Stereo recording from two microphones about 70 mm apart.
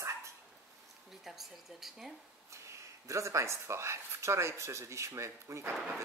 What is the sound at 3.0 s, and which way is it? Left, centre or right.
Speech, right.